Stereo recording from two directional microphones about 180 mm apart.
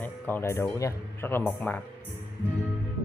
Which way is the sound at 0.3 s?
15° left (ahead or behind).